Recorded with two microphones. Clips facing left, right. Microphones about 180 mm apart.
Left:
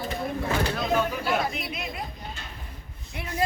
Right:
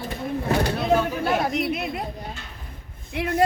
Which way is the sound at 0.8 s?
65° right (ahead or behind).